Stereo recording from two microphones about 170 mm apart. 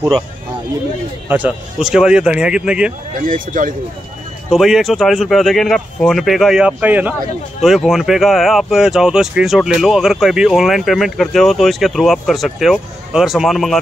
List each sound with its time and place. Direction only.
1.3 s speech: 5° right (ahead or behind)
3.3 s speech: 50° right (ahead or behind)
4.5 s speech: centre (ahead or behind)